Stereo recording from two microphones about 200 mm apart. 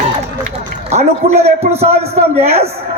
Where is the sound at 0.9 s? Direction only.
30° right (ahead or behind).